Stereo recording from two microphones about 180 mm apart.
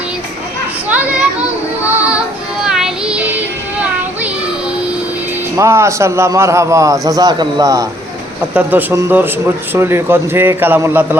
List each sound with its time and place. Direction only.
0.9 s children playing: 10° right (ahead or behind)
1.8 s music: 10° right (ahead or behind)
2.6 s child singing: 5° right (ahead or behind)
5.5 s a man's voice: 15° right (ahead or behind)